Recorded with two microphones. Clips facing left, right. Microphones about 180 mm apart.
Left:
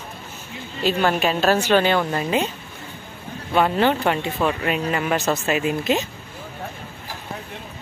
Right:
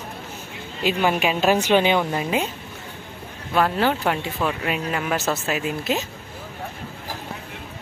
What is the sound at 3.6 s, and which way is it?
Speech, centre (ahead or behind).